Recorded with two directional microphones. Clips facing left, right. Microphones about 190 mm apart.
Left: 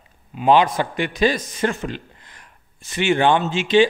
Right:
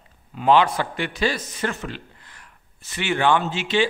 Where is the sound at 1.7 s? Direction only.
20° left (ahead or behind).